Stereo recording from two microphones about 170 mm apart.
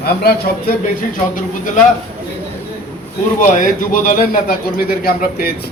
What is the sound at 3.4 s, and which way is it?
A man's voice, 50° left (ahead or behind).